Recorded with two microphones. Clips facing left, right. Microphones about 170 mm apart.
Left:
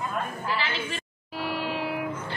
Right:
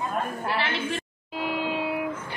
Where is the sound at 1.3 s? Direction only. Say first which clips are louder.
Right 2 dB; 20° right (ahead or behind).